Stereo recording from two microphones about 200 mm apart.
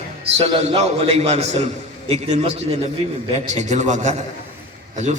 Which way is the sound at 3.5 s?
35° right (ahead or behind).